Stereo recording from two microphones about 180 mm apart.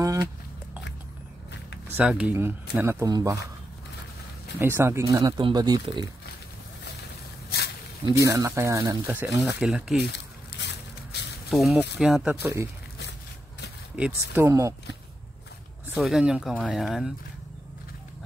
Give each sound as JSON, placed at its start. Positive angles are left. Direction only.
{"t": 0.0, "sound": "a sound", "side_deg": -20}
{"t": 1.9, "sound": "speech", "side_deg": -10}
{"t": 4.6, "sound": "speech", "side_deg": -15}
{"t": 7.4, "sound": "snake", "side_deg": 65}
{"t": 8.2, "sound": "speech", "side_deg": -20}
{"t": 10.0, "sound": "a sound", "side_deg": 70}
{"t": 11.5, "sound": "speech", "side_deg": -5}
{"t": 13.9, "sound": "speech", "side_deg": -10}
{"t": 15.9, "sound": "speech", "side_deg": 0}